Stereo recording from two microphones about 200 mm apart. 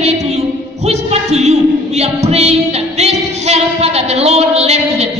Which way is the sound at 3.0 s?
30° right (ahead or behind).